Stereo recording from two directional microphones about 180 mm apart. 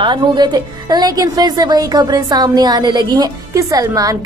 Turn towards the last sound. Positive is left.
turn(degrees=-20)  # may be behind; listen again after turning